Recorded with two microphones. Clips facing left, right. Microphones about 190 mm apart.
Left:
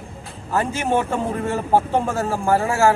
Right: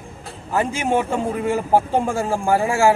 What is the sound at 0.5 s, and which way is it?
A man's voice, 15° right (ahead or behind).